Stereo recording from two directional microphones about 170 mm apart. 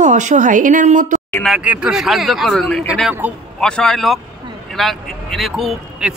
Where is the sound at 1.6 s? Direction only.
5° right (ahead or behind).